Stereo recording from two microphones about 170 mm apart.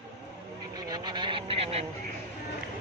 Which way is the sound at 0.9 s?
25° right (ahead or behind).